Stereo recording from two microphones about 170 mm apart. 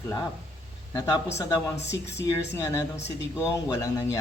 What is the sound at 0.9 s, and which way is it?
Speech, 20° left (ahead or behind).